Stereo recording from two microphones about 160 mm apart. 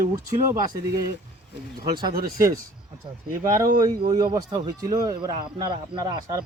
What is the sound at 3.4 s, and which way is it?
Speech, 20° right (ahead or behind).